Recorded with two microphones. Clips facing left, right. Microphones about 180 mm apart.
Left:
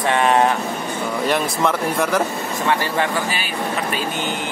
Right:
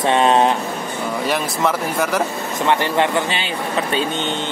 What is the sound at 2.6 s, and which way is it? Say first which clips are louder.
Speech: right 3 dB; 20° right (ahead or behind).